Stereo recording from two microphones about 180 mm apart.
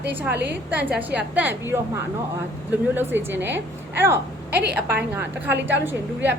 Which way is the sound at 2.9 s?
10° right (ahead or behind).